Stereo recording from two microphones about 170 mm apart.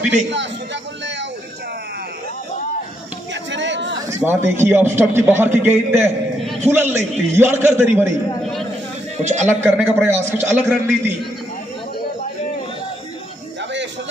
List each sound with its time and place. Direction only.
3.5 s chatter: 90° right
4.1 s a man's voice: 15° right (ahead or behind)
8.4 s a sound: centre (ahead or behind)
9.2 s a man's voice: 45° right (ahead or behind)
9.6 s a man's voice: 10° right (ahead or behind)